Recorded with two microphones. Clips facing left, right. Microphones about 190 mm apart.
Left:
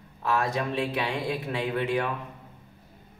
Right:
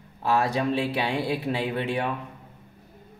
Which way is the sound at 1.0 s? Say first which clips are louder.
Right 3 dB; 30° right (ahead or behind).